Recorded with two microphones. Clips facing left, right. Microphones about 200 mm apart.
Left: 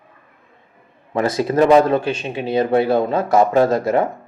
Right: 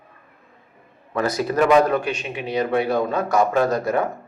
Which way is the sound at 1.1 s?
25° left (ahead or behind).